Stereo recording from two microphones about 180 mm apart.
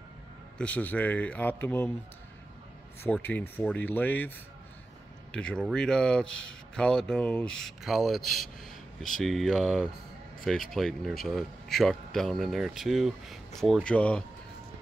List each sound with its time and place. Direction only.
0.6 s speech: 10° left (ahead or behind)
3.0 s speech: 10° left (ahead or behind)
5.3 s speech: 5° left (ahead or behind)